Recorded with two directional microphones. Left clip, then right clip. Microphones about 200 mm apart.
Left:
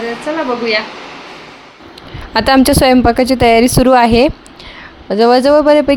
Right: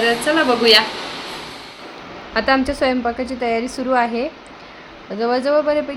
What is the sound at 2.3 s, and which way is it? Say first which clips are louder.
Speech: left 7 dB; 50° left (ahead or behind).